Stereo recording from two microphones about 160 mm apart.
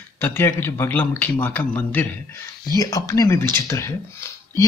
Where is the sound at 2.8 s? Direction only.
20° left (ahead or behind).